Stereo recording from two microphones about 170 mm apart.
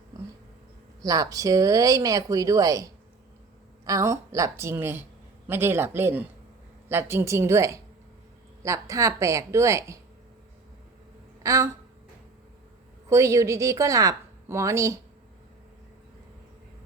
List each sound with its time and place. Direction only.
1.0 s a woman's voice: 20° right (ahead or behind)
11.4 s a woman's voice: 20° right (ahead or behind)
13.1 s a woman's voice: 15° right (ahead or behind)